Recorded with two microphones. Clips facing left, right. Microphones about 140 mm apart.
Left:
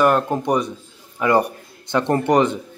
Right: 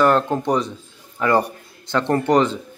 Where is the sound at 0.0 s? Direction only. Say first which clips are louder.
Even; 10° left (ahead or behind).